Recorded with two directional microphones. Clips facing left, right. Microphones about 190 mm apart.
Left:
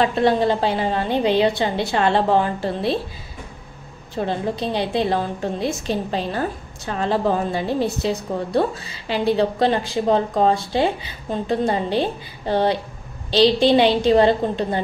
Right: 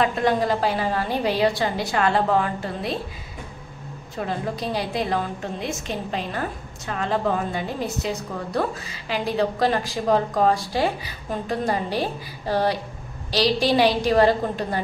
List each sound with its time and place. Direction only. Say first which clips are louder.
0.0 s a woman's voice: left 3 dB; 30° left (ahead or behind)
4.1 s a woman's voice: left 4 dB; 30° left (ahead or behind)